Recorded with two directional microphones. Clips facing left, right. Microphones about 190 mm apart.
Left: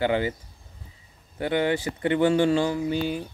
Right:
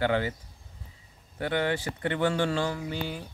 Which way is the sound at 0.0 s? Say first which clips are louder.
Left 3 dB; 15° left (ahead or behind).